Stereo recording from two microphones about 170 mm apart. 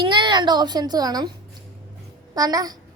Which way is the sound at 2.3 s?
20° right (ahead or behind).